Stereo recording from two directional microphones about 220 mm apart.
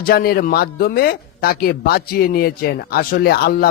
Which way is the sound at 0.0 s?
45° left (ahead or behind).